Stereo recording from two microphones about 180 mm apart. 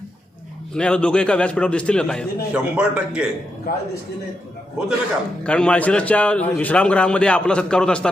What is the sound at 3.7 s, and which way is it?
Speech, 55° left (ahead or behind).